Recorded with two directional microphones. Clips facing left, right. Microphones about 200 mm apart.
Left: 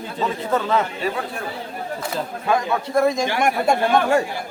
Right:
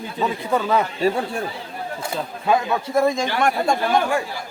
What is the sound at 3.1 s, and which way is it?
Speech, 10° left (ahead or behind).